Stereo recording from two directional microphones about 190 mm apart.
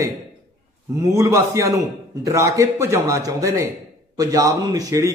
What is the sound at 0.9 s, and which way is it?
A man's voice, 15° right (ahead or behind).